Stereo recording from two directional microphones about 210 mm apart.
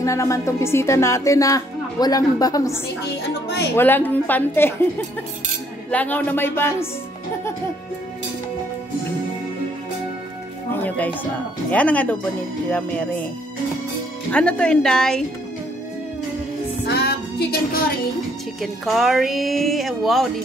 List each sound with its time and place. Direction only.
0.0 s speech: 15° left (ahead or behind)
5.9 s speech: 5° left (ahead or behind)
10.7 s speech: 10° left (ahead or behind)
14.3 s speech: 5° left (ahead or behind)
16.8 s music: 50° left (ahead or behind)
18.6 s speech: centre (ahead or behind)